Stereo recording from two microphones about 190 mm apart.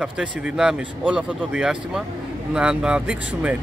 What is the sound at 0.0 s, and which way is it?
Speech, 5° right (ahead or behind).